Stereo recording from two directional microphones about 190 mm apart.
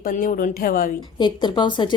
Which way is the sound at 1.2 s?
25° left (ahead or behind).